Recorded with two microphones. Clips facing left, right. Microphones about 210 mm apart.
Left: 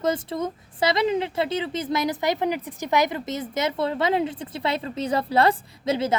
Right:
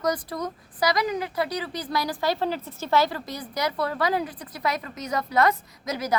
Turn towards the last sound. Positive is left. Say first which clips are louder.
# left 6 dB
turn(degrees=25)  # may be behind; listen again after turning